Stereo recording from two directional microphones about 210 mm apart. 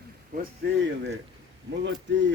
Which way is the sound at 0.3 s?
50° right (ahead or behind).